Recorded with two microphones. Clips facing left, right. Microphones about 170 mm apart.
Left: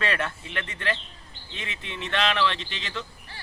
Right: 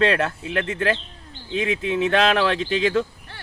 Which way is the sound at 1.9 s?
45° right (ahead or behind).